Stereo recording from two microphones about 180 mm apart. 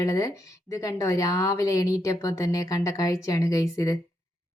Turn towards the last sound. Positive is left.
turn(degrees=15)  # may be behind; listen again after turning